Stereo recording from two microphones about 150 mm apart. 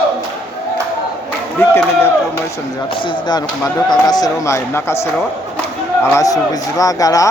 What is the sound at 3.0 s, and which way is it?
Speech, 30° left (ahead or behind).